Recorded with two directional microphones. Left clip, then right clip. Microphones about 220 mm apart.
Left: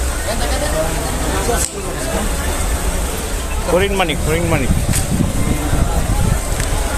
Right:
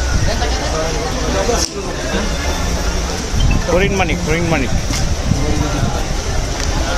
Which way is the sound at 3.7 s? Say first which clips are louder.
Left 1 dB; 5° left (ahead or behind).